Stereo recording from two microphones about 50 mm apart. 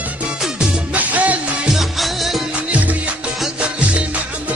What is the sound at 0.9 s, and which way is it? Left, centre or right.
Music, right.